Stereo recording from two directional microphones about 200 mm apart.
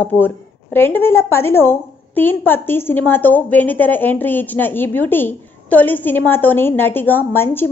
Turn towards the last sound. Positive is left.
turn(degrees=10)  # may be behind; listen again after turning